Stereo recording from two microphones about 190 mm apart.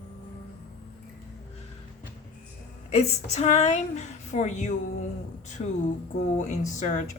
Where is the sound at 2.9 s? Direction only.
35° left (ahead or behind).